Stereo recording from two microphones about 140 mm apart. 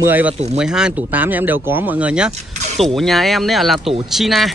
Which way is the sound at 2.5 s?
55° right (ahead or behind).